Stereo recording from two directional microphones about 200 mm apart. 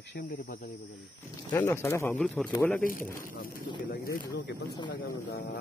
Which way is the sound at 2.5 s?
15° left (ahead or behind).